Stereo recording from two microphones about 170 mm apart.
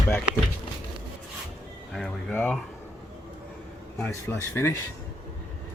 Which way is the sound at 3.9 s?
5° left (ahead or behind).